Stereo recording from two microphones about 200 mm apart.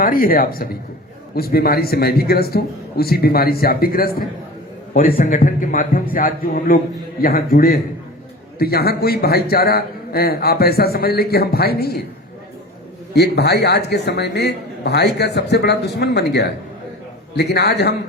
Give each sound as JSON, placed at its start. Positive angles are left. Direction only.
{"t": 0.0, "sound": "a man's voice", "side_deg": 45}
{"t": 13.1, "sound": "speech", "side_deg": 55}